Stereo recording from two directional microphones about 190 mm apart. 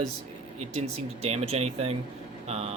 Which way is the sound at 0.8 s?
35° right (ahead or behind).